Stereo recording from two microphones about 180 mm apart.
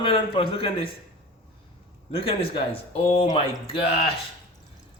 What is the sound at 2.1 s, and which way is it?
Speech, 30° left (ahead or behind).